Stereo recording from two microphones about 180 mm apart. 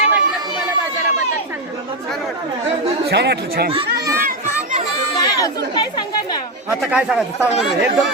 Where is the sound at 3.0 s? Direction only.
70° right (ahead or behind).